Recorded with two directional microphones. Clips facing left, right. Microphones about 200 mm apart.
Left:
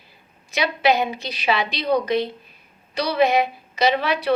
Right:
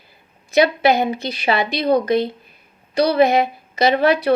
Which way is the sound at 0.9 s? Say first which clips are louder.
Right 3 dB; 55° right (ahead or behind).